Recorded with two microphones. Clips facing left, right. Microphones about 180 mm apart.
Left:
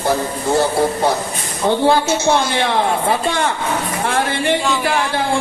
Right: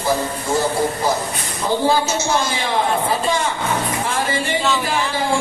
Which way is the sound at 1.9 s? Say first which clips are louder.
Left 4 dB; 65° left (ahead or behind).